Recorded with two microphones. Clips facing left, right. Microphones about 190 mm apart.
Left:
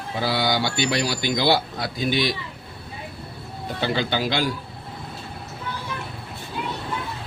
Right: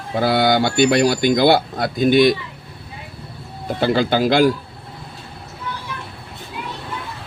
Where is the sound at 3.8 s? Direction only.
50° right (ahead or behind).